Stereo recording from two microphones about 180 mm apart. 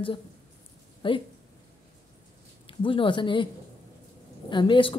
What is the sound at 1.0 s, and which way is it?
Speech, 30° left (ahead or behind).